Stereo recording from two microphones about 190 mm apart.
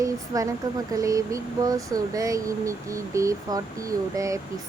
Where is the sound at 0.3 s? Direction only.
15° right (ahead or behind).